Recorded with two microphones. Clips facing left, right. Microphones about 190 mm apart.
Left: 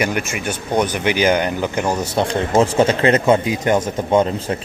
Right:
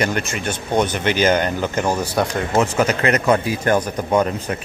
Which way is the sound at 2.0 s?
25° left (ahead or behind).